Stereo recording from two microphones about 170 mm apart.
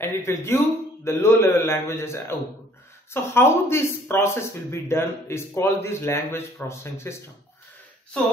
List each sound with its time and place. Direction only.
0.0 s speech: 15° left (ahead or behind)